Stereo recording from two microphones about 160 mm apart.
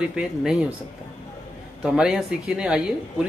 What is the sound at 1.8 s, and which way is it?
Speech, 5° right (ahead or behind).